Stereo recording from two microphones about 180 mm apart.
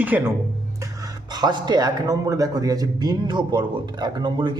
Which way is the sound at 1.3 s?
25° right (ahead or behind).